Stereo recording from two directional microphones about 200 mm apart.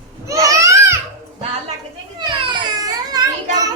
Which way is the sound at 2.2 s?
20° right (ahead or behind).